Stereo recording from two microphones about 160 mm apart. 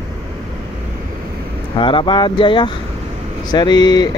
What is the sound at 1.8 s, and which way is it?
Speech, 30° left (ahead or behind).